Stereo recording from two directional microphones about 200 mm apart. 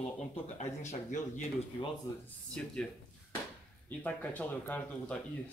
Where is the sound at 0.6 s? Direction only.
35° left (ahead or behind).